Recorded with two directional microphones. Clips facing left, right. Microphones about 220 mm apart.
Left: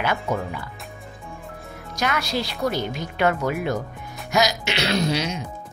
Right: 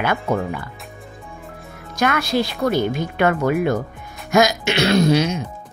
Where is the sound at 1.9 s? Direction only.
55° right (ahead or behind).